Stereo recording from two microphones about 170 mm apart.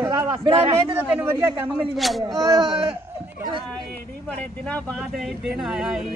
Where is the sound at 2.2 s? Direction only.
20° right (ahead or behind).